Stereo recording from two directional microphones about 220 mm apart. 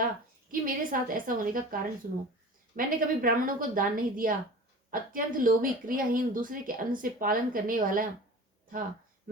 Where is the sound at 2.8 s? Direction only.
40° right (ahead or behind).